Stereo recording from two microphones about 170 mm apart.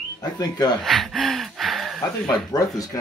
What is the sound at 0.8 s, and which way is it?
Speech, centre (ahead or behind).